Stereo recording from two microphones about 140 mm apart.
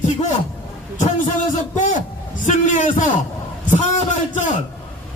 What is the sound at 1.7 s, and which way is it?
A man's voice, 65° left (ahead or behind).